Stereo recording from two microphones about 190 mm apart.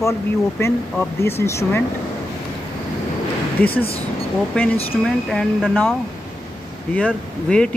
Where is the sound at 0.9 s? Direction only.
10° left (ahead or behind).